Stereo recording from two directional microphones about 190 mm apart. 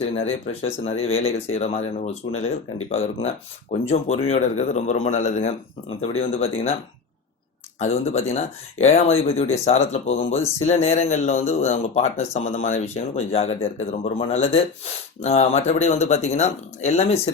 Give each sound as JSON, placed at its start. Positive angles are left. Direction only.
{"t": 0.0, "sound": "speech", "side_deg": 30}
{"t": 7.8, "sound": "speech", "side_deg": 35}